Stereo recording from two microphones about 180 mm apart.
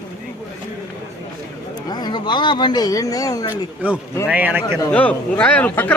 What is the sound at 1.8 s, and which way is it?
Speech, 20° left (ahead or behind).